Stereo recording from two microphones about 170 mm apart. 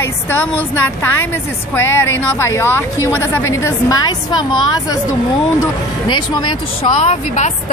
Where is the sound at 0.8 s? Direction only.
10° left (ahead or behind).